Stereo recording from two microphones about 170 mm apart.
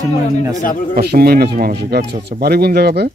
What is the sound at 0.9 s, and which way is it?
Speech, 65° right (ahead or behind).